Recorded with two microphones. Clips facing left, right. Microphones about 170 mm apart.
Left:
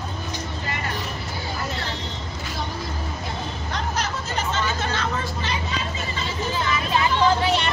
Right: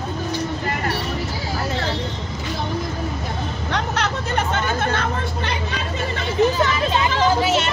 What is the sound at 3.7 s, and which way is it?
Chatter, 65° right (ahead or behind).